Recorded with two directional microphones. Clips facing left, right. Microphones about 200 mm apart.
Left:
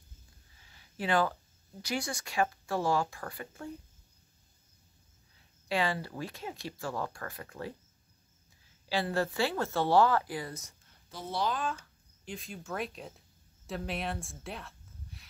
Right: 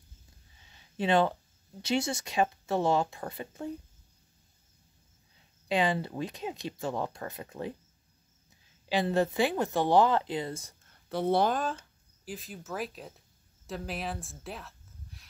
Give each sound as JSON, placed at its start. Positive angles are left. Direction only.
{"t": 0.6, "sound": "speech", "side_deg": -20}
{"t": 5.7, "sound": "speech", "side_deg": -20}
{"t": 8.8, "sound": "speech", "side_deg": -20}
{"t": 11.1, "sound": "speech", "side_deg": -60}
{"t": 12.3, "sound": "speech", "side_deg": 0}